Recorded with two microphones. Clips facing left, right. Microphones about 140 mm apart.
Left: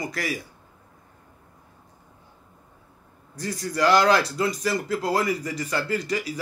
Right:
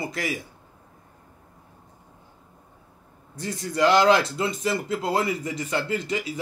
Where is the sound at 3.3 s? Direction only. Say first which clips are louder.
Right 1 dB; 25° right (ahead or behind).